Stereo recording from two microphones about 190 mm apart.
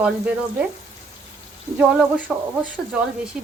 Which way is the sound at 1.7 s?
10° right (ahead or behind).